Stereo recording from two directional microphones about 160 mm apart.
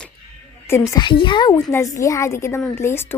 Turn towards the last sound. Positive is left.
turn(degrees=15)  # may be behind; listen again after turning